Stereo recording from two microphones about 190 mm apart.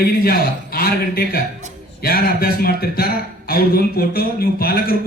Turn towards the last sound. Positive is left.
turn(degrees=55)  # may be behind; listen again after turning